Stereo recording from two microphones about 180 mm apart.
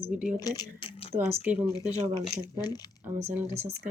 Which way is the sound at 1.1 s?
10° right (ahead or behind).